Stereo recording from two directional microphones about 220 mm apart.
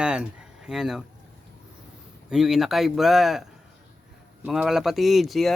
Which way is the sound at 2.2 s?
Centre (ahead or behind).